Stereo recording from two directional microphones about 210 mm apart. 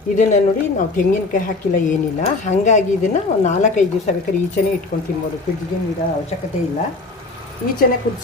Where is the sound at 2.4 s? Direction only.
35° left (ahead or behind).